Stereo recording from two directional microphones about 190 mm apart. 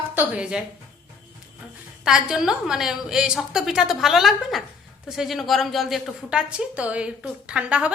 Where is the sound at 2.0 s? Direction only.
5° right (ahead or behind).